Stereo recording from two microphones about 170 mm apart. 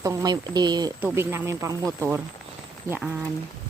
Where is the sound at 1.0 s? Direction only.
15° right (ahead or behind).